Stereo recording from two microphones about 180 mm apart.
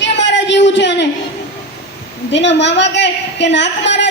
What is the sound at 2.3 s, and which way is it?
A woman's voice, 75° left (ahead or behind).